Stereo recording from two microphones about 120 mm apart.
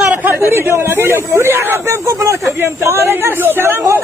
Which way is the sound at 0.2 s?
20° right (ahead or behind).